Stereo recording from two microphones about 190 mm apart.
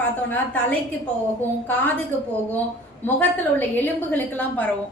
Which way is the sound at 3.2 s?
10° left (ahead or behind).